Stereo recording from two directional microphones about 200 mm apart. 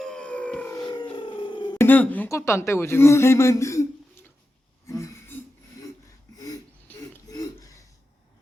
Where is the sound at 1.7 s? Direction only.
10° left (ahead or behind).